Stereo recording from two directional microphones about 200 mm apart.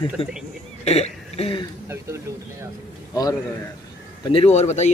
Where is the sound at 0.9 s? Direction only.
30° left (ahead or behind).